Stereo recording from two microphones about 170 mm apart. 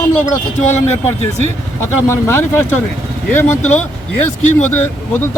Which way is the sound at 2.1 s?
15° left (ahead or behind).